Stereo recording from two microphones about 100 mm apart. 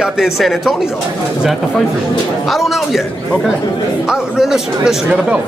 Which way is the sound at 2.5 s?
Centre (ahead or behind).